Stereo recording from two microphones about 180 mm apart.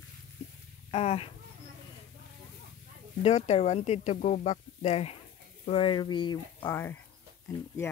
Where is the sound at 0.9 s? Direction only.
35° left (ahead or behind).